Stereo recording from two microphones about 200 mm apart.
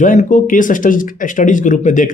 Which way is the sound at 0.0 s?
40° left (ahead or behind).